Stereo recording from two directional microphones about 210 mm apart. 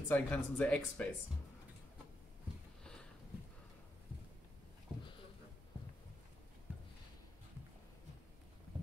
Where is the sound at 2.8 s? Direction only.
5° left (ahead or behind).